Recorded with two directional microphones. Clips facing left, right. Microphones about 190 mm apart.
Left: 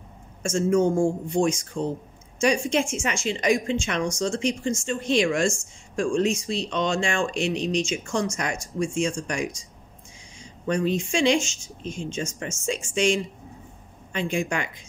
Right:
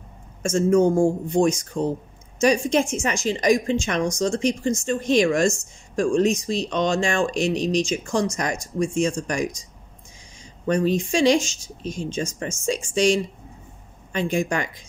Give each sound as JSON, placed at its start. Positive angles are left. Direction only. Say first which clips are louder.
{"t": 0.4, "sound": "a woman's voice", "louder": "right 3 dB", "side_deg": -40}
{"t": 10.7, "sound": "a woman's voice", "louder": "right 3 dB", "side_deg": -40}